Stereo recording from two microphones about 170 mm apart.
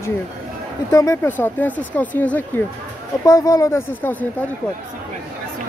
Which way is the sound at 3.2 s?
20° left (ahead or behind).